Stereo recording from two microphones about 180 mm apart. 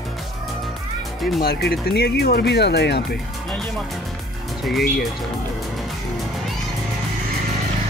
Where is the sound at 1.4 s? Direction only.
60° left (ahead or behind).